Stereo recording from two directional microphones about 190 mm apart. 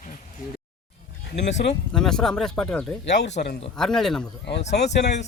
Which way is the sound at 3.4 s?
55° left (ahead or behind).